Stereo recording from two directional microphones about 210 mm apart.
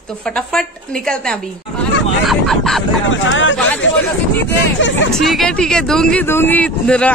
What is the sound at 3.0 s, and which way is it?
Speech, 65° left (ahead or behind).